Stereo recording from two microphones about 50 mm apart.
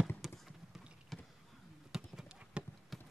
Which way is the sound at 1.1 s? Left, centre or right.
Centre.